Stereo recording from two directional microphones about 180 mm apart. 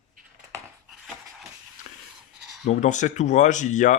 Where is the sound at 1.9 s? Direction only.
45° left (ahead or behind).